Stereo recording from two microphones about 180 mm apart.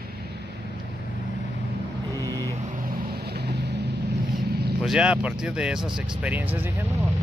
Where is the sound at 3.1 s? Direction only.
65° right (ahead or behind).